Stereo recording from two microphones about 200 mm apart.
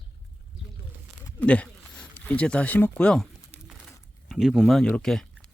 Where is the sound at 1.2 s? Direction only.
5° left (ahead or behind).